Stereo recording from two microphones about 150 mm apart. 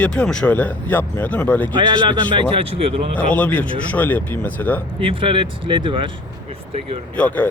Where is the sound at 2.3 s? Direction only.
35° right (ahead or behind).